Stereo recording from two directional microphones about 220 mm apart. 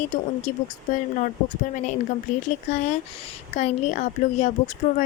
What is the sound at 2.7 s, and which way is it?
A woman's voice, 30° left (ahead or behind).